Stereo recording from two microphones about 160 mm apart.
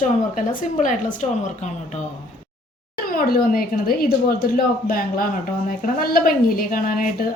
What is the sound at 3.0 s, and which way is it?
A woman's voice, 60° left (ahead or behind).